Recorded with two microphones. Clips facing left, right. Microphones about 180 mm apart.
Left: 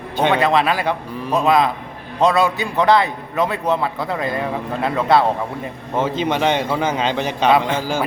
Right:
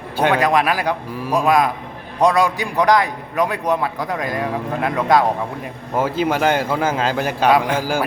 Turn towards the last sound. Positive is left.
turn(degrees=-10)  # may be behind; listen again after turning